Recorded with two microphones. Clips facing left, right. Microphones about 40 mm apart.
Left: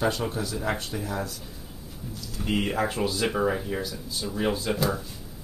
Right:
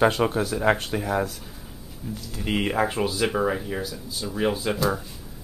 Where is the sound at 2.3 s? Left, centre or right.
Right.